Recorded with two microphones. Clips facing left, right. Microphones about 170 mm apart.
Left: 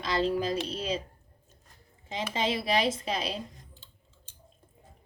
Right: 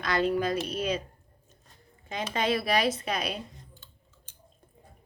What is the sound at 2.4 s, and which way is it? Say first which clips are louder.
Speech: right 2 dB; 25° left (ahead or behind).